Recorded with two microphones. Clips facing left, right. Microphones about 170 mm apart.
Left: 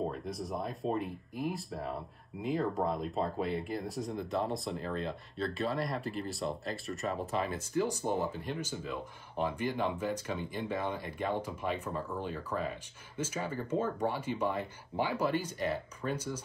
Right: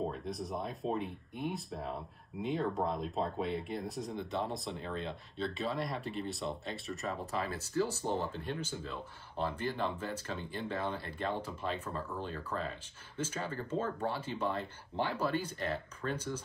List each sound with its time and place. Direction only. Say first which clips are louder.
0.0 s speech: left 1 dB; centre (ahead or behind)
7.2 s speech: left 3 dB; 20° left (ahead or behind)